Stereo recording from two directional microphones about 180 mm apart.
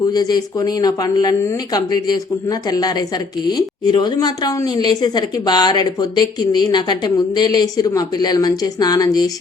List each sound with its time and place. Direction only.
0.1 s speech: 20° left (ahead or behind)